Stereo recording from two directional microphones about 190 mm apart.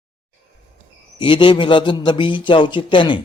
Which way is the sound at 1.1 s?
25° left (ahead or behind).